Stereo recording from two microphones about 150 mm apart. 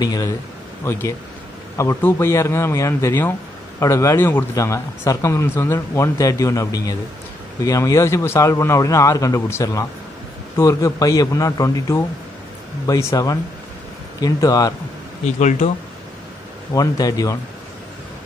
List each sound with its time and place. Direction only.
0.0 s speech: 25° left (ahead or behind)
15.2 s speech: 50° left (ahead or behind)
16.7 s speech: 25° left (ahead or behind)